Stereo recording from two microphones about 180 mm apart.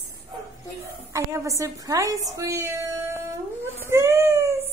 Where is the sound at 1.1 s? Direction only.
15° right (ahead or behind).